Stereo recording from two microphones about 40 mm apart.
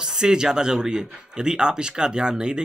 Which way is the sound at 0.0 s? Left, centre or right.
Centre.